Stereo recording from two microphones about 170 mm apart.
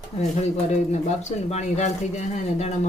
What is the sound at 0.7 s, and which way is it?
Speech, 45° left (ahead or behind).